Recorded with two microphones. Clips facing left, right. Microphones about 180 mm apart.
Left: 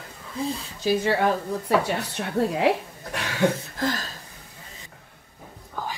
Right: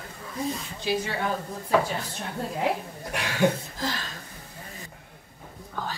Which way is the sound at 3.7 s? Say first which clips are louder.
Left 5 dB; 55° left (ahead or behind).